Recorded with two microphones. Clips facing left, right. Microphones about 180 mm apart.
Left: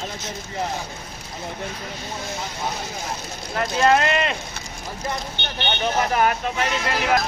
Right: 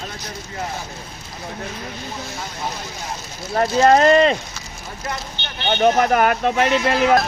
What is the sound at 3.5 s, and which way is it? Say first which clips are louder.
Speech: right 5 dB; 35° right (ahead or behind).